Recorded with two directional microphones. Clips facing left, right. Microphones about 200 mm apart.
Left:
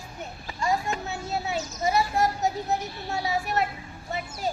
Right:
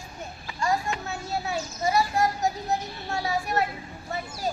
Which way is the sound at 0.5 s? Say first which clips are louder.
Even; 20° left (ahead or behind).